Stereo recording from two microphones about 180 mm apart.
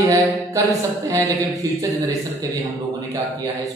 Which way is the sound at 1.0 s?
20° right (ahead or behind).